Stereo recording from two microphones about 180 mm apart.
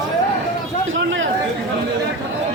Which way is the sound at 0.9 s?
90° right.